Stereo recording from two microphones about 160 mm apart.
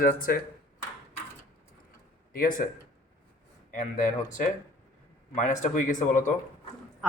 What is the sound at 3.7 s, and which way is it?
Speech, 60° left (ahead or behind).